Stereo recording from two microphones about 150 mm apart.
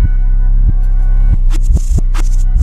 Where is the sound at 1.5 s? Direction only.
Centre (ahead or behind).